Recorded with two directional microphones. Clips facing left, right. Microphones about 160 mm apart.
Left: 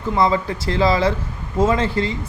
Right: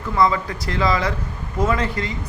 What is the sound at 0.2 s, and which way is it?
Speech, 30° left (ahead or behind).